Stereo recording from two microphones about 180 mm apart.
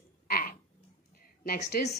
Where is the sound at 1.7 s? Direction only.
60° left (ahead or behind).